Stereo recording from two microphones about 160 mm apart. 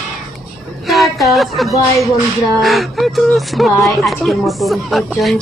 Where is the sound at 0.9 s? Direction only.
Centre (ahead or behind).